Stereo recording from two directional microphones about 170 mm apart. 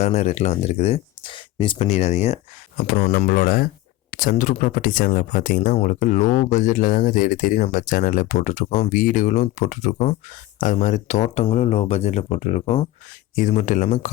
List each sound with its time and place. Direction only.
0.0 s speech: 40° left (ahead or behind)
2.7 s speech: 55° left (ahead or behind)